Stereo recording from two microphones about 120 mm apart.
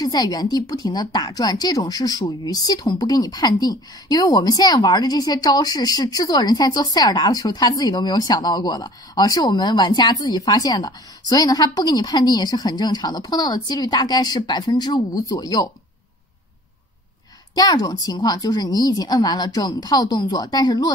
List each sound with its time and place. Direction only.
0.0 s a woman's voice: 35° left (ahead or behind)
17.6 s a woman's voice: 30° left (ahead or behind)